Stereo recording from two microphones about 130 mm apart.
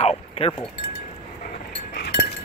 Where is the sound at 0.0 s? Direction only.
50° left (ahead or behind).